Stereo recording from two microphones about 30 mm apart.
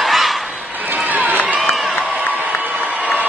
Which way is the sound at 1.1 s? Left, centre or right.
Right.